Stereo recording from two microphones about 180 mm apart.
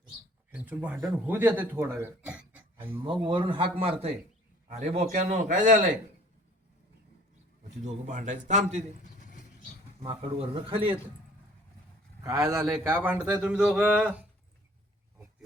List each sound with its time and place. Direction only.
0.5 s speech: 10° right (ahead or behind)
3.0 s a man's voice: 25° right (ahead or behind); by 5.7 s 45° right (ahead or behind)
7.9 s a man's voice: 40° right (ahead or behind)
9.1 s vehicle: 45° left (ahead or behind)
10.0 s a man's voice: 30° right (ahead or behind)
12.2 s speech: 15° right (ahead or behind)